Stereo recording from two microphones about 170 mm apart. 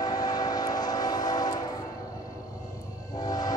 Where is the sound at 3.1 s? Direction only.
20° left (ahead or behind).